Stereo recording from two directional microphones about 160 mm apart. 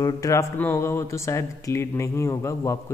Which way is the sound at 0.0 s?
20° left (ahead or behind).